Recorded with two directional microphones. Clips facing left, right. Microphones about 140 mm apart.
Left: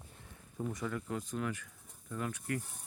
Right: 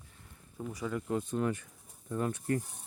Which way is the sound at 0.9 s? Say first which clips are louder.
Right 5 dB; 25° right (ahead or behind).